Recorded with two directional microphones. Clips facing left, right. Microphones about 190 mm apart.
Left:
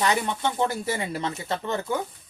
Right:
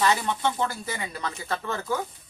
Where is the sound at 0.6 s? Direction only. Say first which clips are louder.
Left 4 dB; 25° left (ahead or behind).